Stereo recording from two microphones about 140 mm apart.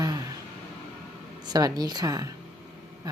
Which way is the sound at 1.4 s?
30° right (ahead or behind).